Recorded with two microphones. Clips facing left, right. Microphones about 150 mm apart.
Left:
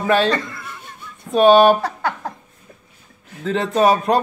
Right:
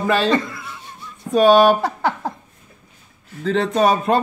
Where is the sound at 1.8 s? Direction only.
25° right (ahead or behind).